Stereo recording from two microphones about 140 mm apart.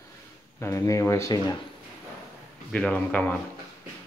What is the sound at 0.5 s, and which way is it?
Speech, 20° left (ahead or behind).